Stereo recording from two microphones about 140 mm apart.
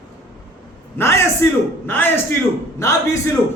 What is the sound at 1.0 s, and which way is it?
A man's voice, 20° left (ahead or behind).